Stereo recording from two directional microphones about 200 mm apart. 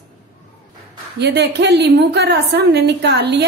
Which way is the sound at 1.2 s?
55° right (ahead or behind).